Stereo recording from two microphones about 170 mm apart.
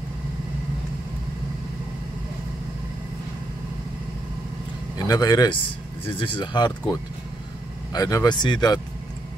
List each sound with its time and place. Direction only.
4.9 s speech: 25° left (ahead or behind)
7.9 s speech: 20° left (ahead or behind)